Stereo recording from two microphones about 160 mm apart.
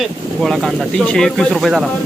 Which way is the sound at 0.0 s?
Centre (ahead or behind).